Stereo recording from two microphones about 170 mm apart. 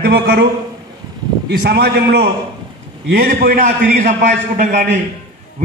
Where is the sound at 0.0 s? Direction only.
65° right (ahead or behind).